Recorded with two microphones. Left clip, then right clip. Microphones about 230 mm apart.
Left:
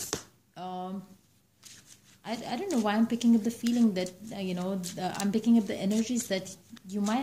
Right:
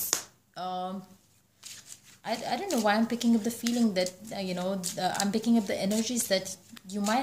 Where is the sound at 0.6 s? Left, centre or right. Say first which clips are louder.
Right 4 dB; right.